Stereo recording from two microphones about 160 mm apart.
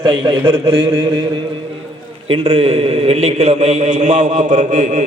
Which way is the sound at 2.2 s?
35° right (ahead or behind).